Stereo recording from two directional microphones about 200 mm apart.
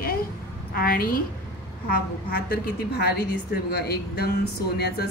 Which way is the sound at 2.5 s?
50° left (ahead or behind).